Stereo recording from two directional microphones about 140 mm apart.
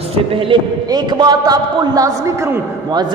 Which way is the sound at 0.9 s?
30° right (ahead or behind).